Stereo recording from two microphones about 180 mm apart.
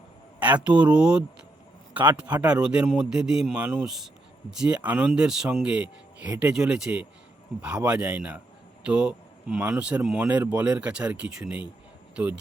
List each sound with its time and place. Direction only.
0.3 s a man's voice: 10° right (ahead or behind)